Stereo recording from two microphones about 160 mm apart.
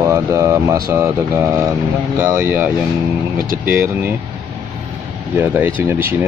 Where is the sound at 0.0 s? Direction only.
20° right (ahead or behind).